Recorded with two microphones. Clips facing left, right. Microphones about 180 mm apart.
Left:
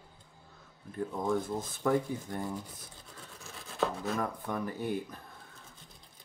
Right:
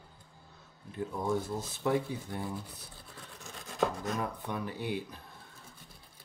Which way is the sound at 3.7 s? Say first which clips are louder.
Even; centre (ahead or behind).